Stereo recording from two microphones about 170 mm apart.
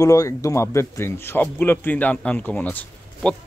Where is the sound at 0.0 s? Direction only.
20° left (ahead or behind).